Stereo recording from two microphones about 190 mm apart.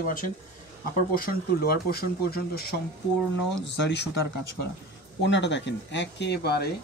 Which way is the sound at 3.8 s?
65° left (ahead or behind).